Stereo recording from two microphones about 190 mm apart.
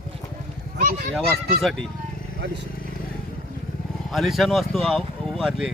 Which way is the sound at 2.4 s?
65° right (ahead or behind).